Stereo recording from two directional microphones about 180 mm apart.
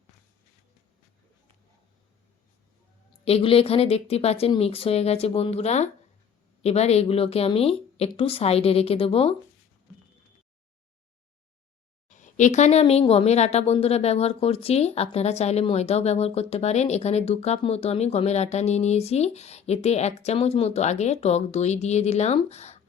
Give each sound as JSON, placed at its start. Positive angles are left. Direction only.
{"t": 3.2, "sound": "speech", "side_deg": 30}
{"t": 12.0, "sound": "speech", "side_deg": 45}